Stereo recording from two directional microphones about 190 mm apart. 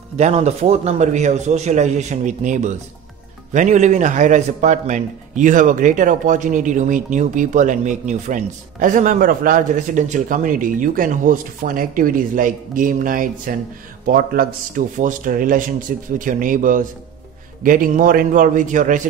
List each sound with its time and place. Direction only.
0.2 s a man's voice: 35° right (ahead or behind)